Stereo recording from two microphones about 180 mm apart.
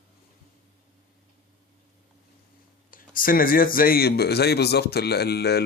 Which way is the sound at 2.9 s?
50° left (ahead or behind).